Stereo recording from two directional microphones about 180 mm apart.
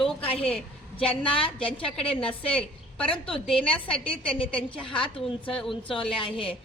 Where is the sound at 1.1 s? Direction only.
30° left (ahead or behind).